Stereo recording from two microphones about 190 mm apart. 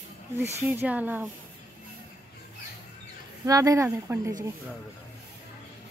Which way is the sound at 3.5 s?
20° right (ahead or behind).